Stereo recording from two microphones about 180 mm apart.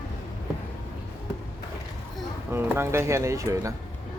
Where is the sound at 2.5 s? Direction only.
15° right (ahead or behind).